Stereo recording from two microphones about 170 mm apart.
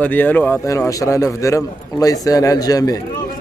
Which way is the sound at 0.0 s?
10° left (ahead or behind).